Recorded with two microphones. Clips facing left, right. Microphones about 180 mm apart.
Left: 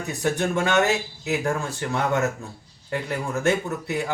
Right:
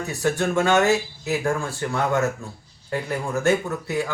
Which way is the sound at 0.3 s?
20° left (ahead or behind).